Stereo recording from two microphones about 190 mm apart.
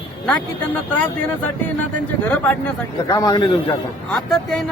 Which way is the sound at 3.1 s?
20° left (ahead or behind).